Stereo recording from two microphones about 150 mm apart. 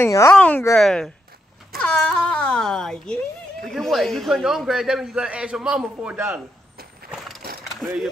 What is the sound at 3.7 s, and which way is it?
A man's voice, centre (ahead or behind).